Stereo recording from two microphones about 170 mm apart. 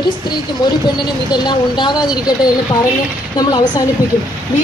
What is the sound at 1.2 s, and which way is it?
Speech, 25° left (ahead or behind).